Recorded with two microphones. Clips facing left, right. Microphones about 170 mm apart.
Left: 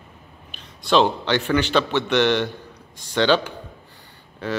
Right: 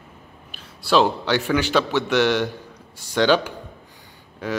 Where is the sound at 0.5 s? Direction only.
5° right (ahead or behind).